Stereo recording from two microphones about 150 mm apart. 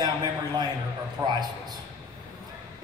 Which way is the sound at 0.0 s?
30° right (ahead or behind).